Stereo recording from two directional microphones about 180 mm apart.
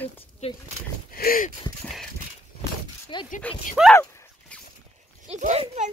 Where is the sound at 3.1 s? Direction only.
25° left (ahead or behind).